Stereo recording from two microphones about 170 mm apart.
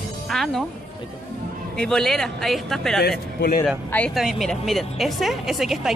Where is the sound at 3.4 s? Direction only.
60° left (ahead or behind).